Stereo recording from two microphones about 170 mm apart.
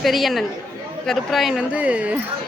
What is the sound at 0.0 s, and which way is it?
Speech, centre (ahead or behind).